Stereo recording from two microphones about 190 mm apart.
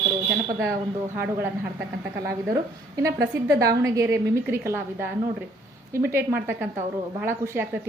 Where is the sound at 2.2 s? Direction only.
15° right (ahead or behind).